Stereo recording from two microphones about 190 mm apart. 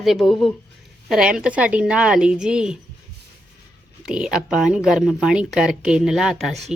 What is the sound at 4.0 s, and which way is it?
Speech, 5° right (ahead or behind).